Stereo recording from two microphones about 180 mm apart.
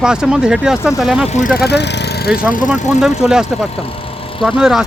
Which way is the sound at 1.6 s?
70° left (ahead or behind).